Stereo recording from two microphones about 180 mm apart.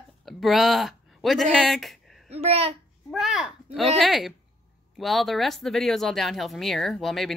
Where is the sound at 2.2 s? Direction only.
35° right (ahead or behind).